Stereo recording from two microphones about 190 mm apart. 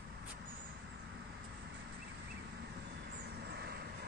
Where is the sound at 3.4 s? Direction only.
60° right (ahead or behind).